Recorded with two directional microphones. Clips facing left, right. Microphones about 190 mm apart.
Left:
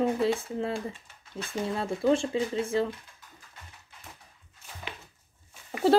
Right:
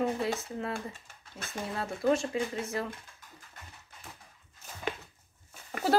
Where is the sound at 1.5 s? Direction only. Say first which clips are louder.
Left 5 dB; 30° left (ahead or behind).